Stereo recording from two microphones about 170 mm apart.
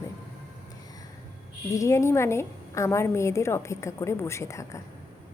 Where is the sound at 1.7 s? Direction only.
15° left (ahead or behind).